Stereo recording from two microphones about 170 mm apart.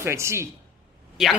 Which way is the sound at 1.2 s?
Centre (ahead or behind).